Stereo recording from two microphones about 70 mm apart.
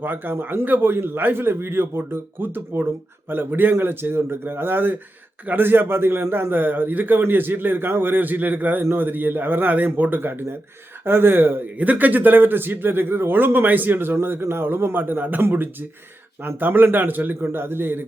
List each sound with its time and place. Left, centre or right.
0.0 s a man's voice: right